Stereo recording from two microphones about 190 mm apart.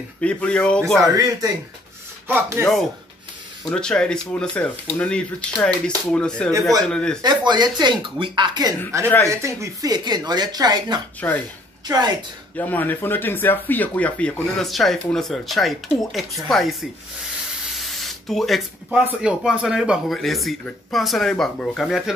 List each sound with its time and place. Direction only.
0.2 s speech: 5° left (ahead or behind)
2.2 s speech: 10° right (ahead or behind)
3.6 s speech: 5° left (ahead or behind)
7.2 s speech: 20° right (ahead or behind)
11.2 s speech: 10° left (ahead or behind)
12.5 s speech: 10° left (ahead or behind)
17.7 s speech: centre (ahead or behind)